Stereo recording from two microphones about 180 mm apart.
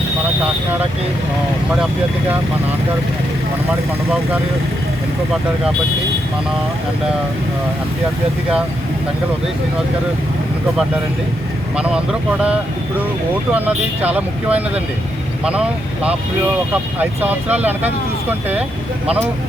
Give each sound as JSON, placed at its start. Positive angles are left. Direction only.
{"t": 11.8, "sound": "speech", "side_deg": -5}
{"t": 16.7, "sound": "speech", "side_deg": -10}